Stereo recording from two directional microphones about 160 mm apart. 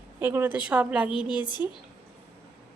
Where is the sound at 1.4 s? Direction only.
25° left (ahead or behind).